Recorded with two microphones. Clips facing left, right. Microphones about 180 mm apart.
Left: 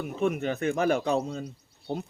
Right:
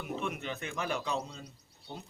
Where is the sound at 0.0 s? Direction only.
45° left (ahead or behind).